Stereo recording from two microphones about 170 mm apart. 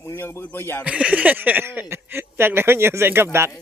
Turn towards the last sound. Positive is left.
turn(degrees=-15)  # may be behind; listen again after turning